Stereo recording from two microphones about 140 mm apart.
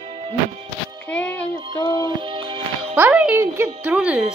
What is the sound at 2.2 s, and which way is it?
Music, 35° right (ahead or behind).